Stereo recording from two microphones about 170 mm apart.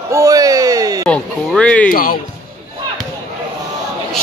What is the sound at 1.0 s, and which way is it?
Speech, 5° left (ahead or behind).